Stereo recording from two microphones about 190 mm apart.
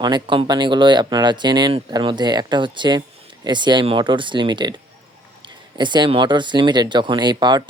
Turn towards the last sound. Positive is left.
turn(degrees=-20)  # may be behind; listen again after turning